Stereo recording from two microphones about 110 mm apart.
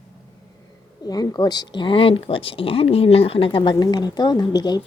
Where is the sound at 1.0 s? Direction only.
40° left (ahead or behind); by 3.7 s 55° left (ahead or behind).